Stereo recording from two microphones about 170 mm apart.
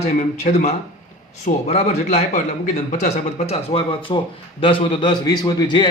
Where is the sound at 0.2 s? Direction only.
45° left (ahead or behind).